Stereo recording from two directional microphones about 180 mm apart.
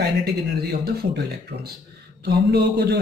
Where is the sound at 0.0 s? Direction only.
60° right (ahead or behind).